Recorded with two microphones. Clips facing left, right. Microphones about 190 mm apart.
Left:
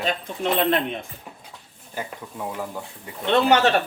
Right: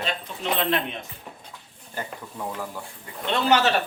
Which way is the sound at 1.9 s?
10° left (ahead or behind).